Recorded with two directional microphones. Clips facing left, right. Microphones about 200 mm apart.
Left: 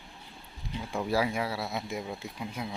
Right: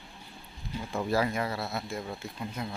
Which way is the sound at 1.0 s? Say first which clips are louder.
Even; 10° left (ahead or behind).